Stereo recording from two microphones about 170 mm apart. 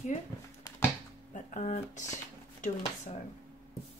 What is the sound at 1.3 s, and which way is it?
Speech, 45° left (ahead or behind).